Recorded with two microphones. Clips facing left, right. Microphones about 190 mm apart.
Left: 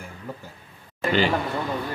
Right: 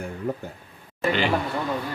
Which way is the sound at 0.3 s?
65° right (ahead or behind).